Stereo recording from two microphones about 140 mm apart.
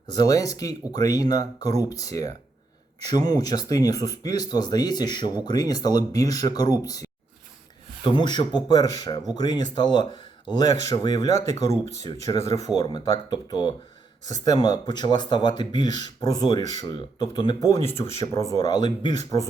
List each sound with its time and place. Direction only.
0.1 s speech: 25° left (ahead or behind)
17.8 s speech: 45° left (ahead or behind)
18.3 s speech: 25° left (ahead or behind)